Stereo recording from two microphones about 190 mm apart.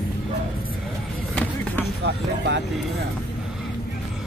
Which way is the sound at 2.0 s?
65° right (ahead or behind).